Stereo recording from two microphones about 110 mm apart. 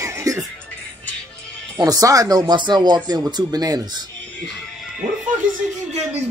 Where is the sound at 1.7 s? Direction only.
35° right (ahead or behind).